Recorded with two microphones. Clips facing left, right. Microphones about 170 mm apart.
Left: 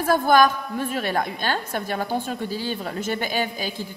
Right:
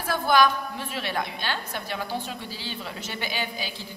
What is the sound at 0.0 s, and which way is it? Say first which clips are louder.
A woman's voice: left 4 dB; 45° left (ahead or behind).